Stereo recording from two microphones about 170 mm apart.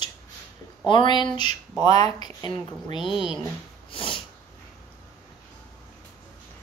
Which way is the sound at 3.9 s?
30° left (ahead or behind).